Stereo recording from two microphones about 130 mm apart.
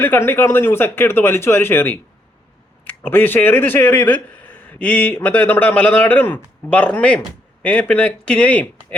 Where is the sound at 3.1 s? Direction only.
15° left (ahead or behind).